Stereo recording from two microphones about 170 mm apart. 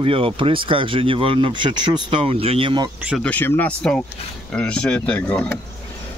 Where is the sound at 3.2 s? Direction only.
10° left (ahead or behind).